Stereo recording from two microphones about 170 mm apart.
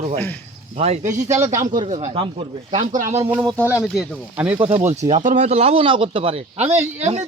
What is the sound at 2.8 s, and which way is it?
Speech, 50° right (ahead or behind).